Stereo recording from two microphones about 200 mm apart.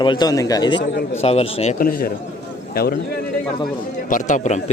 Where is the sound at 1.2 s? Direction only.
30° left (ahead or behind).